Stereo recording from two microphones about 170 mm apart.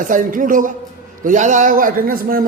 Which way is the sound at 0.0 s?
50° right (ahead or behind).